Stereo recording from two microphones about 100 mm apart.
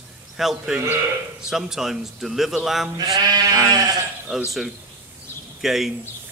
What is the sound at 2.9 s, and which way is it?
Sheep, 40° right (ahead or behind).